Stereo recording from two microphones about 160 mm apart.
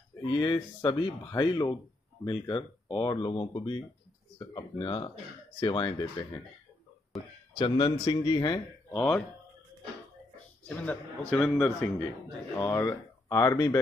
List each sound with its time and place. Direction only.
0.3 s speech: 25° left (ahead or behind)
7.1 s speech: centre (ahead or behind)
7.5 s a man's voice: 35° left (ahead or behind)
8.9 s speech: 5° left (ahead or behind)
10.6 s speech: 10° left (ahead or behind)